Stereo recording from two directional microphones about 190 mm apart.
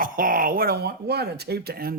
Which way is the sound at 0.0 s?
45° right (ahead or behind).